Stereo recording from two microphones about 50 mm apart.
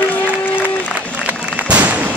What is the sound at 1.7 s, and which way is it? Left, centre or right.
Fireworks, right.